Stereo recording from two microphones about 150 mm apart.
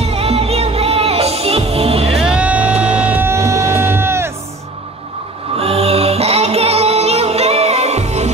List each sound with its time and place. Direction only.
0.1 s music: 40° right (ahead or behind)
2.2 s music: 10° right (ahead or behind)
5.6 s music: 45° right (ahead or behind)